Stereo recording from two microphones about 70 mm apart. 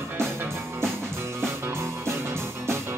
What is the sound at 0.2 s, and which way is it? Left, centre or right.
Music, right.